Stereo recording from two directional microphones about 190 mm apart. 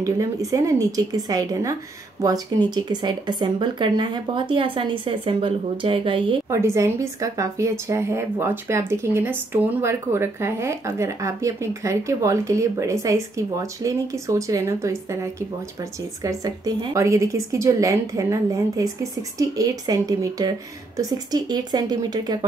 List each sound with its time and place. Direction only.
0.0 s a woman's voice: 15° right (ahead or behind)
6.5 s a woman's voice: 15° right (ahead or behind)
16.2 s a woman's voice: 20° right (ahead or behind)